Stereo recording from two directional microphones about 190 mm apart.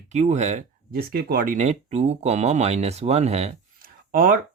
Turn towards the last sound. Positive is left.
turn(degrees=-50)  # may be behind; listen again after turning